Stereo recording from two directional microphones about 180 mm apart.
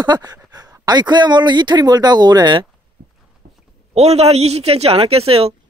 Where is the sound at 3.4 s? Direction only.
65° right (ahead or behind).